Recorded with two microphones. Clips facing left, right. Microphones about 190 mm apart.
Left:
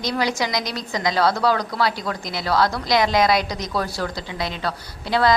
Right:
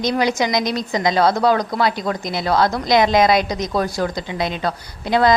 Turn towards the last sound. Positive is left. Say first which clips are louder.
# right 3 dB
turn(degrees=-20)  # may be behind; listen again after turning